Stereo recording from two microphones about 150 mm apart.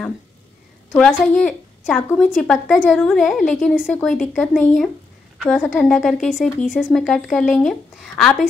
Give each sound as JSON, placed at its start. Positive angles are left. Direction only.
{"t": 1.1, "sound": "speech", "side_deg": 5}